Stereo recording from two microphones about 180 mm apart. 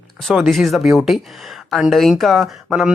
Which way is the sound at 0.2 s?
Centre (ahead or behind).